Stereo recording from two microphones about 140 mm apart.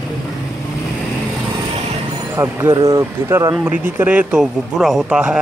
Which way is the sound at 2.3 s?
20° right (ahead or behind).